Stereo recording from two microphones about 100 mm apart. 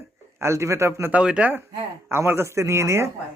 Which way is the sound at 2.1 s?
25° right (ahead or behind).